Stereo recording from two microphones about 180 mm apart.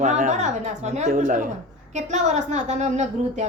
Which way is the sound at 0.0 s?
40° right (ahead or behind).